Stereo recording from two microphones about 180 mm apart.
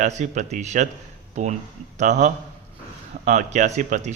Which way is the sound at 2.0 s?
40° right (ahead or behind).